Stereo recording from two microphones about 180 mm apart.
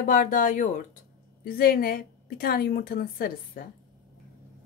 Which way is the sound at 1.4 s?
55° left (ahead or behind).